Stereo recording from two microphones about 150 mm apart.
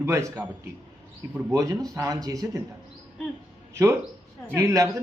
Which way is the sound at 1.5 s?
20° right (ahead or behind).